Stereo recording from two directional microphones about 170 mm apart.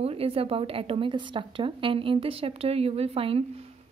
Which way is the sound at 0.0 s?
35° right (ahead or behind).